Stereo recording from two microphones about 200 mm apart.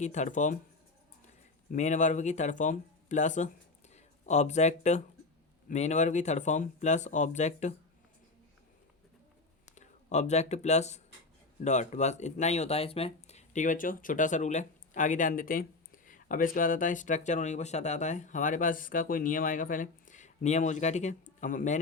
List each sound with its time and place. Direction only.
0.0 s speech: 35° left (ahead or behind)
1.7 s speech: 35° left (ahead or behind)
9.6 s speech: 35° left (ahead or behind)